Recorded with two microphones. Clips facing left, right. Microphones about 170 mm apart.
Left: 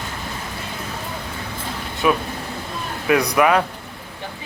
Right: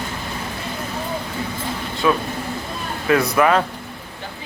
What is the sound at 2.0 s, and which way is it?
Speech, 15° left (ahead or behind).